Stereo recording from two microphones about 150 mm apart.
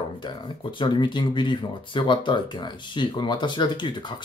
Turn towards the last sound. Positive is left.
turn(degrees=30)  # may be behind; listen again after turning